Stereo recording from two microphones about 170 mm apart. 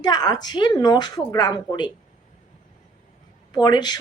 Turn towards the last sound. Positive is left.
turn(degrees=25)  # may be behind; listen again after turning